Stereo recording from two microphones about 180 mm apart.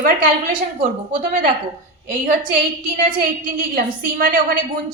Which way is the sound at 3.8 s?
55° right (ahead or behind).